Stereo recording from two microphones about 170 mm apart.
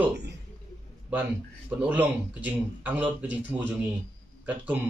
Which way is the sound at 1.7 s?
10° right (ahead or behind).